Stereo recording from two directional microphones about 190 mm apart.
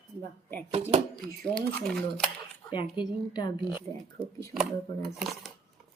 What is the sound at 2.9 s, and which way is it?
Speech, 25° left (ahead or behind).